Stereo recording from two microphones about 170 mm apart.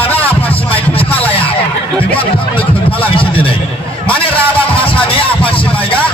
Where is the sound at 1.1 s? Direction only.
10° left (ahead or behind).